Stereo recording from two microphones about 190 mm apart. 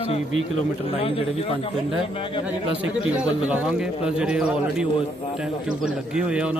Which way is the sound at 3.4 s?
5° right (ahead or behind).